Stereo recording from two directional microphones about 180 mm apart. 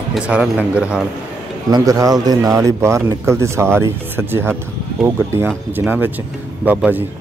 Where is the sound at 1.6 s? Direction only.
20° right (ahead or behind).